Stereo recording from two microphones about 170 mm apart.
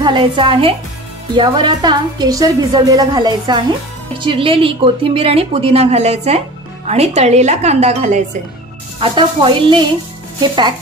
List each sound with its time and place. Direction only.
0.0 s a woman's voice: 30° right (ahead or behind)
9.0 s a woman's voice: 30° right (ahead or behind)